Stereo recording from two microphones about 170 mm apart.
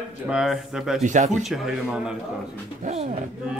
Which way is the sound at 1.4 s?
5° right (ahead or behind).